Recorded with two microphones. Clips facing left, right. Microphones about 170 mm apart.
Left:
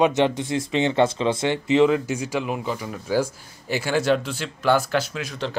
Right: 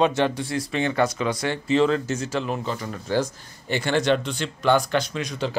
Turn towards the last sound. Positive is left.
turn(degrees=0)  # may be behind; listen again after turning